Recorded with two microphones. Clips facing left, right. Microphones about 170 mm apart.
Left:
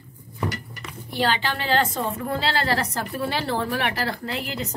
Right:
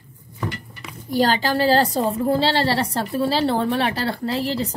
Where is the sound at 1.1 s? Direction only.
40° right (ahead or behind).